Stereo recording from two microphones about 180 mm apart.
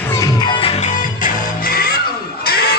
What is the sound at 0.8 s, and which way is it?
Music, 50° left (ahead or behind).